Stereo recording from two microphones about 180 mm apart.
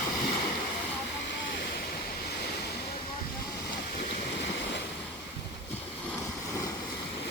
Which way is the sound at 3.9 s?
75° left (ahead or behind).